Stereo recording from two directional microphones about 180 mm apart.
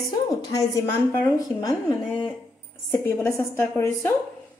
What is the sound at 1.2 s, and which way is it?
Speech, 20° left (ahead or behind).